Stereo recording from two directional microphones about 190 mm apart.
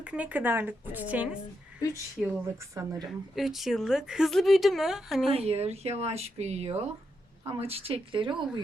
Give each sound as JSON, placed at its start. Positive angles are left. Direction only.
{"t": 0.0, "sound": "a woman's voice", "side_deg": -5}
{"t": 3.1, "sound": "a woman's voice", "side_deg": 0}
{"t": 5.3, "sound": "speech", "side_deg": -30}